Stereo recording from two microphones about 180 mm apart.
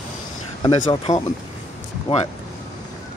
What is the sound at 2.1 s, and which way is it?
Speech, 35° left (ahead or behind).